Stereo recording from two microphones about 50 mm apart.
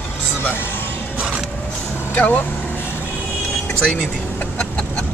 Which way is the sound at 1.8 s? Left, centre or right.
Left.